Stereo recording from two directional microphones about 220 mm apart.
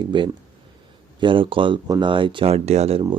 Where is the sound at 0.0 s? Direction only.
20° right (ahead or behind).